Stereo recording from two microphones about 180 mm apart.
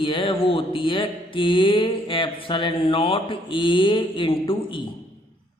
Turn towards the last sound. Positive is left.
turn(degrees=30)  # may be behind; listen again after turning